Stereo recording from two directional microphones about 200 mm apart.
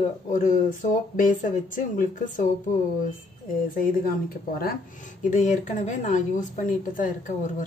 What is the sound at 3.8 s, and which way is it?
Speech, 45° left (ahead or behind).